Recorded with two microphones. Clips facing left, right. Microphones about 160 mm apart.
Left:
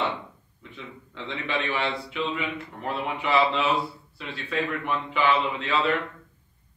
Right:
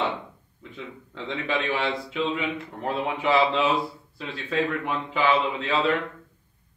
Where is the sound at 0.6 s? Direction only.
40° right (ahead or behind).